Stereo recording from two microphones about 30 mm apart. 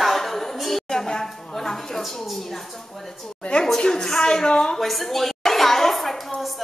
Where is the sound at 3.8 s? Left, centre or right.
Left.